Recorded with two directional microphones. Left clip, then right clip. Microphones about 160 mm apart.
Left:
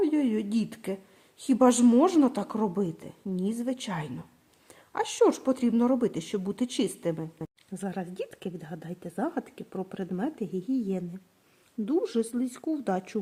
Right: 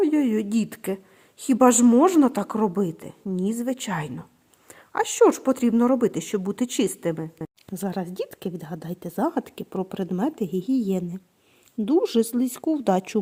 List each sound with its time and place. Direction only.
0.0 s a woman's voice: 25° right (ahead or behind); by 13.1 s 40° right (ahead or behind)